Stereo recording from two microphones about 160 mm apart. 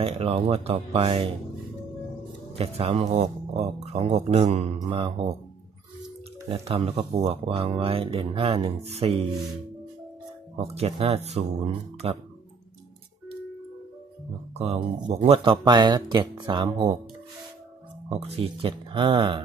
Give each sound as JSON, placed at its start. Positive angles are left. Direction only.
{"t": 0.0, "sound": "speech", "side_deg": -40}
{"t": 2.5, "sound": "speech", "side_deg": -35}
{"t": 6.5, "sound": "speech", "side_deg": -40}
{"t": 10.6, "sound": "speech", "side_deg": -40}
{"t": 14.6, "sound": "speech", "side_deg": -35}
{"t": 18.0, "sound": "speech", "side_deg": -40}